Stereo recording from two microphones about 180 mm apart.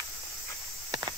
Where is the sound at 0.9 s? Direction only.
20° right (ahead or behind).